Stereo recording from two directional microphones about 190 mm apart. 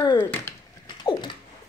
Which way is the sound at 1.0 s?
30° left (ahead or behind).